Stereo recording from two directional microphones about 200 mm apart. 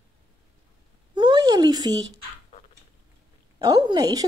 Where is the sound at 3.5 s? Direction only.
20° right (ahead or behind).